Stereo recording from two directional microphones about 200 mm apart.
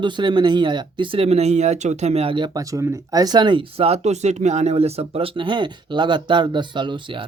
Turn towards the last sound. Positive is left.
turn(degrees=-25)  # may be behind; listen again after turning